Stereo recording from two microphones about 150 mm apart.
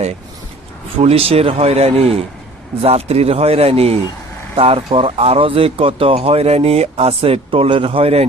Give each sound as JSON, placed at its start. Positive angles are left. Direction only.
{"t": 1.0, "sound": "speech", "side_deg": -40}